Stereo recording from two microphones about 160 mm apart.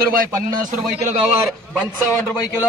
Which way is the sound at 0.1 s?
65° right (ahead or behind).